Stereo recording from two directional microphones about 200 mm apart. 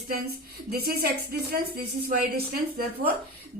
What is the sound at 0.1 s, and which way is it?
Speech, 50° right (ahead or behind).